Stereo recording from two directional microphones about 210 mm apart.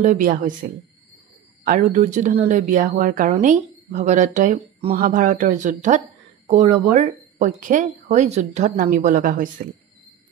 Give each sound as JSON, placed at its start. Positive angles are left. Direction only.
{"t": 0.0, "sound": "speech", "side_deg": -35}